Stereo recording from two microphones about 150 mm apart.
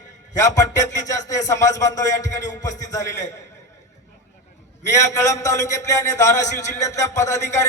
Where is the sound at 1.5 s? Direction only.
20° left (ahead or behind).